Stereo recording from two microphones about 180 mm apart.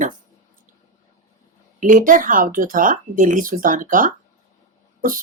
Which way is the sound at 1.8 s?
45° right (ahead or behind).